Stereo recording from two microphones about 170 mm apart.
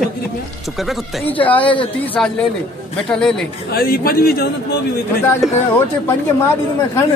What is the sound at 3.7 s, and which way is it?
Speech, 60° left (ahead or behind).